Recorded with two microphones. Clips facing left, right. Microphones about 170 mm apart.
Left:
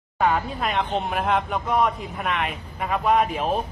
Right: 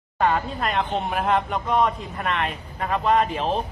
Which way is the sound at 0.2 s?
Centre (ahead or behind).